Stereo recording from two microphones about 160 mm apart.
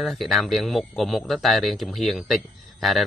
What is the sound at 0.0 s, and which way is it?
Speech, centre (ahead or behind).